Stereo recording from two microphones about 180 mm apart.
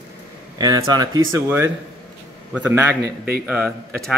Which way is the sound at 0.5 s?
20° right (ahead or behind).